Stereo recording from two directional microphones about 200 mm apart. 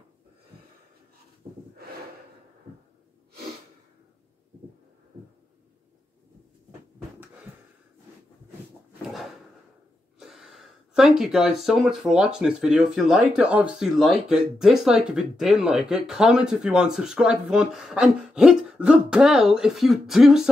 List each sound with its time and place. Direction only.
1.4 s snort: 20° right (ahead or behind)
10.1 s speech: centre (ahead or behind)